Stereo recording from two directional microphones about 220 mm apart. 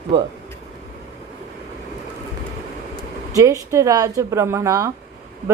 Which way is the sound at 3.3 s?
15° right (ahead or behind).